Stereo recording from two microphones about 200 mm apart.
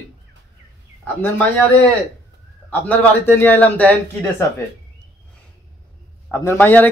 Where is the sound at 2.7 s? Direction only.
10° left (ahead or behind).